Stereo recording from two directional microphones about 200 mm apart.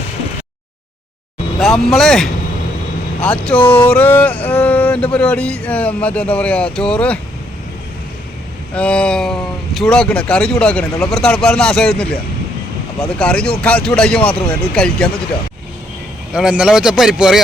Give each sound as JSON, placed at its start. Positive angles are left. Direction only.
{"t": 1.5, "sound": "speech", "side_deg": 0}
{"t": 8.7, "sound": "speech", "side_deg": 5}
{"t": 16.3, "sound": "speech", "side_deg": -5}